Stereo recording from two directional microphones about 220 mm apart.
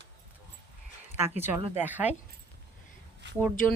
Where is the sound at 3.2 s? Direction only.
50° right (ahead or behind).